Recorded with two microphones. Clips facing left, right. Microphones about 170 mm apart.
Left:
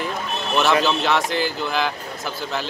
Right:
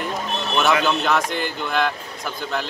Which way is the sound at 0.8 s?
Centre (ahead or behind).